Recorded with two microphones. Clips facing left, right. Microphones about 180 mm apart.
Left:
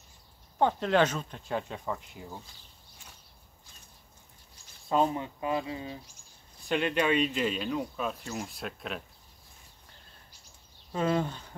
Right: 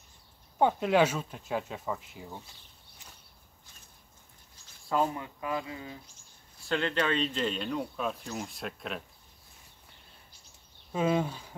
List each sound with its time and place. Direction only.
0.6 s speech: 10° right (ahead or behind)
4.8 s speech: 20° left (ahead or behind); by 9.0 s centre (ahead or behind)
10.9 s speech: 5° right (ahead or behind)